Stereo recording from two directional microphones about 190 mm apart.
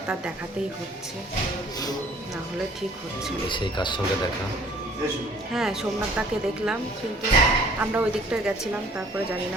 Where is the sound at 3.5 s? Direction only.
25° left (ahead or behind).